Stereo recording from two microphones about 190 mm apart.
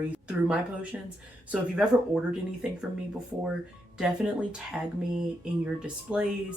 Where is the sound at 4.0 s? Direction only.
5° right (ahead or behind).